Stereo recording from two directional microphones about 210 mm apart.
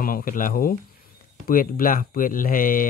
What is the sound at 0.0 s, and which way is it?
Speech, 45° left (ahead or behind).